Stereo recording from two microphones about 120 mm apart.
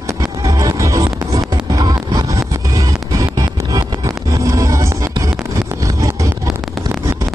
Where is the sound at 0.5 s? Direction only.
30° right (ahead or behind).